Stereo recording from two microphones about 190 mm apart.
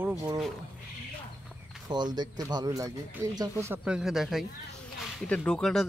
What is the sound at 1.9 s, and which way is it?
Speech, 20° right (ahead or behind).